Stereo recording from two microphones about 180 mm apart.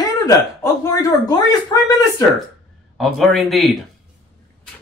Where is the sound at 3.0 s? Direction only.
Centre (ahead or behind).